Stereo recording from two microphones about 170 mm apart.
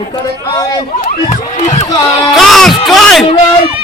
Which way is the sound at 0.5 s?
20° left (ahead or behind).